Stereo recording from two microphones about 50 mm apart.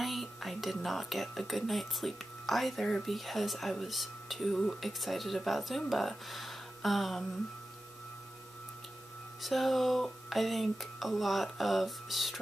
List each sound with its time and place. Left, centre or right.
0.0 s speech: centre
9.4 s speech: centre